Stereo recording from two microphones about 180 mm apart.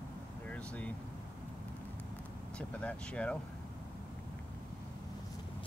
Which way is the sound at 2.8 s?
5° left (ahead or behind).